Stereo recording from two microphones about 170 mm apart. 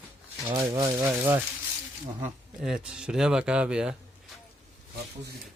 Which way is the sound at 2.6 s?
5° right (ahead or behind).